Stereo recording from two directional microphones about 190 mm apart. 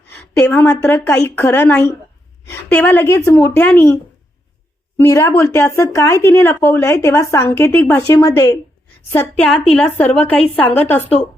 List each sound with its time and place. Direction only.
0.1 s a woman's voice: 10° left (ahead or behind)
4.9 s speech: 15° left (ahead or behind)